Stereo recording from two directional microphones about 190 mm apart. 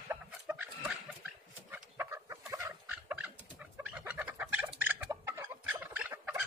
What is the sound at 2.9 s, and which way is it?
Chicken, 5° right (ahead or behind).